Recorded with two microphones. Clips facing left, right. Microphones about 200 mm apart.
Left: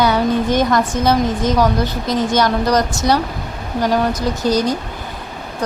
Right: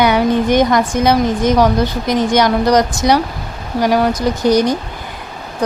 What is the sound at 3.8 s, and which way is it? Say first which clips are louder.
Speech: right 3 dB; 10° right (ahead or behind).